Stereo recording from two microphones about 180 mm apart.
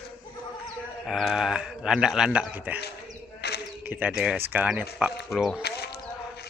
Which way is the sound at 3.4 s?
65° left (ahead or behind).